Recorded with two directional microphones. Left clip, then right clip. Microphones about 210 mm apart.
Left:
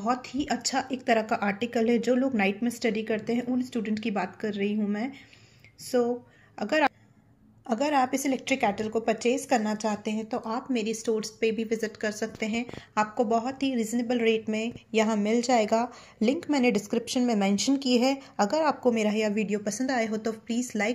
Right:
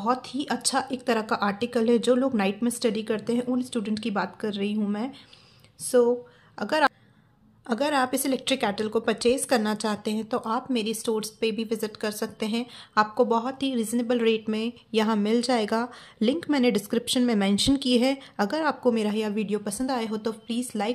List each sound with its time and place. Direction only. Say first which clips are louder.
0.0 s a woman's voice: right 2 dB; 15° right (ahead or behind)